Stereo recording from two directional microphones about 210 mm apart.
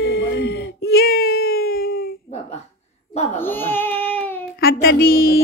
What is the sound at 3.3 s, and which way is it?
Baby cry, 10° left (ahead or behind).